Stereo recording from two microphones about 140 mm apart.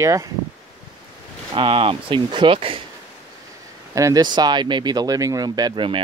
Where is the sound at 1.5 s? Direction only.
40° right (ahead or behind).